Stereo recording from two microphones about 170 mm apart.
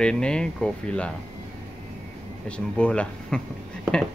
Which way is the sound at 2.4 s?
5° left (ahead or behind).